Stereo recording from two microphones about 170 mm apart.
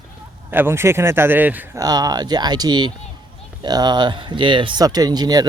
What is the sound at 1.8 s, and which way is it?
Speech, 20° right (ahead or behind).